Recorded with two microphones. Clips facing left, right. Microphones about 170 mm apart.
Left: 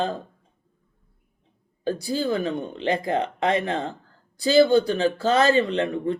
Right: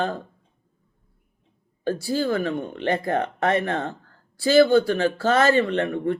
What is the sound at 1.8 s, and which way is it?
Speech, 20° left (ahead or behind).